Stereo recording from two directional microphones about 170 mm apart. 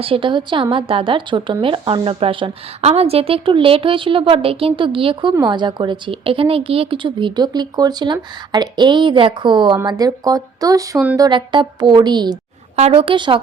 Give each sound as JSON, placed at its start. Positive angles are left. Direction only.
{"t": 0.0, "sound": "a woman's voice", "side_deg": -30}
{"t": 12.7, "sound": "a woman's voice", "side_deg": -35}